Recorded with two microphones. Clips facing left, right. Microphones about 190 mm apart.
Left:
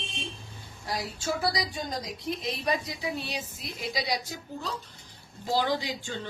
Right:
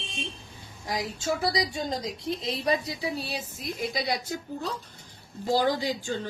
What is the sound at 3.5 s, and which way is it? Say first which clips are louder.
A woman's voice: right 5 dB; 50° right (ahead or behind).